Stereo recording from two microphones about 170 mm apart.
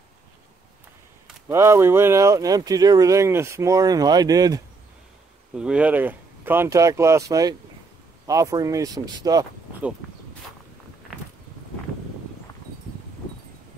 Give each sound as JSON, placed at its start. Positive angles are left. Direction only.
{"t": 1.5, "sound": "speech", "side_deg": -15}
{"t": 5.5, "sound": "speech", "side_deg": -5}